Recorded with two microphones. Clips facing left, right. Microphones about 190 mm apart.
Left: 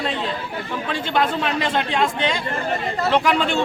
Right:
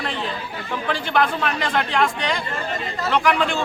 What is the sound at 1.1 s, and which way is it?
Speech, 25° left (ahead or behind).